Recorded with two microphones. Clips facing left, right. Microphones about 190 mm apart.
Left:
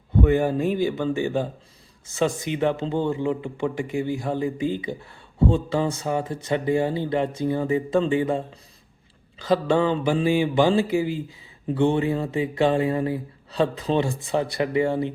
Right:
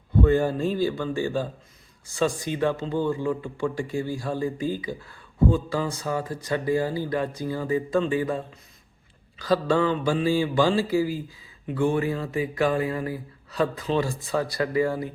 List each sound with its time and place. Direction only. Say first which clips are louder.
0.2 s speech: left 1 dB; 15° left (ahead or behind)